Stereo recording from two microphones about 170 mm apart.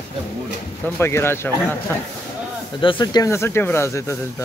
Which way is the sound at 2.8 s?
25° left (ahead or behind).